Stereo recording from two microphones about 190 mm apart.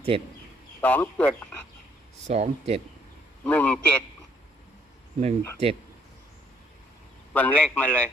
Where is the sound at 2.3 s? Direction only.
35° right (ahead or behind).